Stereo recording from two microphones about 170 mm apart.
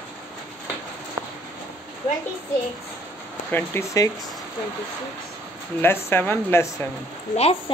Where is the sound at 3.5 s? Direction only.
15° left (ahead or behind).